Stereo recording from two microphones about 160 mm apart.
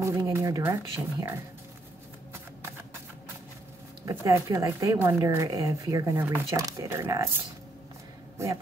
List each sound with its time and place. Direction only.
0.0 s speech: 15° right (ahead or behind)
4.0 s speech: 20° right (ahead or behind)
8.4 s speech: 20° right (ahead or behind)